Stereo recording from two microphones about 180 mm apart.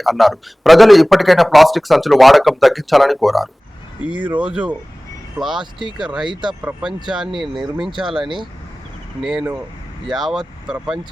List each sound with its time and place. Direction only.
0.0 s a man's voice: centre (ahead or behind)
9.2 s a man's voice: 5° right (ahead or behind)